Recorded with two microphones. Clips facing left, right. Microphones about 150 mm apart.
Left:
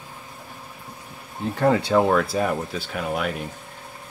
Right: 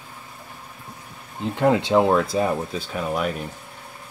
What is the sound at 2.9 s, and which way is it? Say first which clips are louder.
Speech: right 1 dB; 40° right (ahead or behind).